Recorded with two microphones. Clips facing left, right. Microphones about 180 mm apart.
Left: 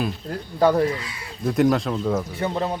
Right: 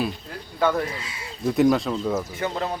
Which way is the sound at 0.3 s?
35° left (ahead or behind).